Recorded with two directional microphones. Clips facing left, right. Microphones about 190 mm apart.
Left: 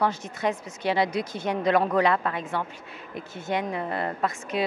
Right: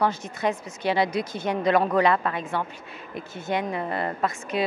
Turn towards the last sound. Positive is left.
turn(degrees=-20)  # may be behind; listen again after turning